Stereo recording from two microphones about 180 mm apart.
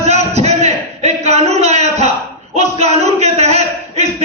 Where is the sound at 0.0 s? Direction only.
35° right (ahead or behind).